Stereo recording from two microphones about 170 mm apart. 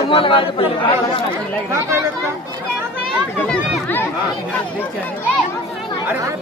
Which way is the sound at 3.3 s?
10° left (ahead or behind).